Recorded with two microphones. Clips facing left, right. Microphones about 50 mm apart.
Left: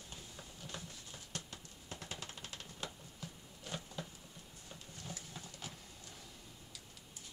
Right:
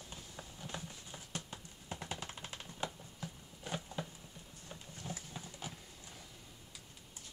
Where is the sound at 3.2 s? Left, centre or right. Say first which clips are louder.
Right 4 dB; centre.